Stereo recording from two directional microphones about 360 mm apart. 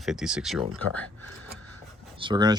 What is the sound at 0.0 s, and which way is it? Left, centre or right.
Speech, centre.